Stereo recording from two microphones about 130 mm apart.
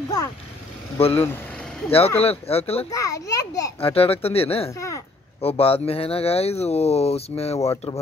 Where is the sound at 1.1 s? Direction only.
15° left (ahead or behind).